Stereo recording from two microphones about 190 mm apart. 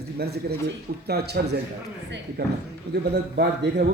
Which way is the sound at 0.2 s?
55° right (ahead or behind).